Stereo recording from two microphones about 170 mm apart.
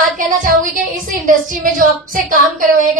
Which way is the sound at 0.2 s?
50° right (ahead or behind).